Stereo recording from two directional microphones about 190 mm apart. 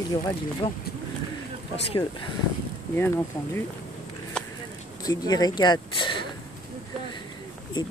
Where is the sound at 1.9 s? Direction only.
30° left (ahead or behind).